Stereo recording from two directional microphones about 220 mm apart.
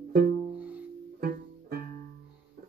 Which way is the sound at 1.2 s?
45° right (ahead or behind).